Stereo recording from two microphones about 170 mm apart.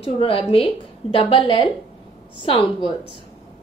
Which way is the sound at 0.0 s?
35° left (ahead or behind).